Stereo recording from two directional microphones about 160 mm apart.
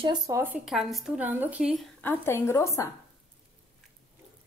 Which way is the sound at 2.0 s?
15° left (ahead or behind).